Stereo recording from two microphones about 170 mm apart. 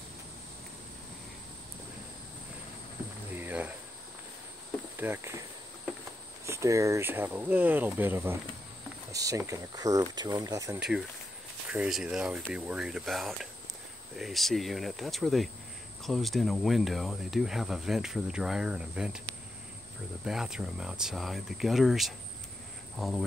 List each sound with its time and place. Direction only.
3.3 s a sound: 10° right (ahead or behind)
4.9 s speech: 15° right (ahead or behind)
6.4 s speech: 15° right (ahead or behind)
9.1 s a sound: 20° right (ahead or behind)
9.5 s speech: 20° right (ahead or behind)
10.8 s speech: 5° right (ahead or behind)
20.2 s speech: 5° right (ahead or behind)